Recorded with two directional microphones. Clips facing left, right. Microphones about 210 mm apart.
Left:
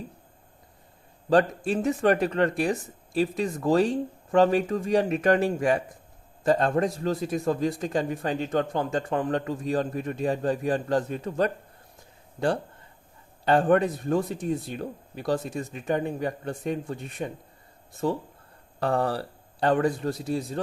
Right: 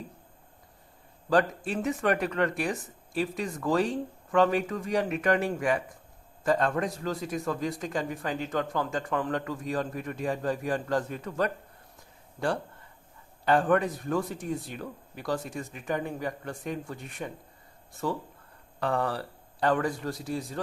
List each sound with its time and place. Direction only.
1.3 s a man's voice: 30° left (ahead or behind)
13.4 s a man's voice: 25° left (ahead or behind)